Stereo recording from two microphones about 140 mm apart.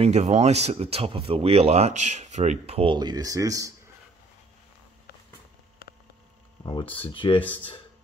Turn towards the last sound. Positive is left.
turn(degrees=40)  # may be behind; listen again after turning